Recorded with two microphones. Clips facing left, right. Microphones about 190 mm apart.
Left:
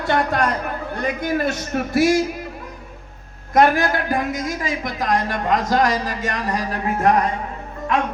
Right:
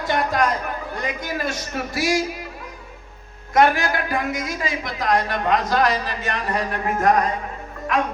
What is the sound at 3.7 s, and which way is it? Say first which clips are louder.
Speech: left 3 dB; 50° left (ahead or behind).